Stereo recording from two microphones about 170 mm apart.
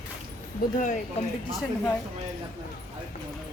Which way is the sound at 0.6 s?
60° left (ahead or behind).